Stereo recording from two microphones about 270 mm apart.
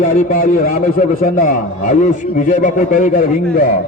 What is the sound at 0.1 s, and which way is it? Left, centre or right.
A man's voice, left.